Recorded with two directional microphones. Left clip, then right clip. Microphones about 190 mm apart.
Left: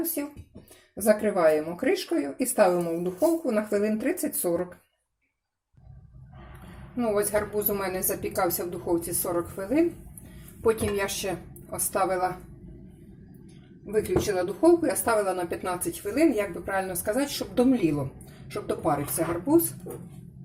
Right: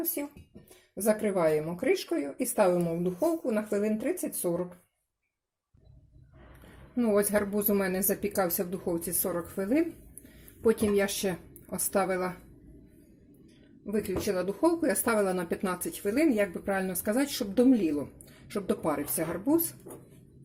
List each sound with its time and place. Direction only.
0.2 s speech: 20° right (ahead or behind)
6.9 s speech: 40° right (ahead or behind)
13.9 s speech: 50° right (ahead or behind)
19.9 s speech: 10° right (ahead or behind)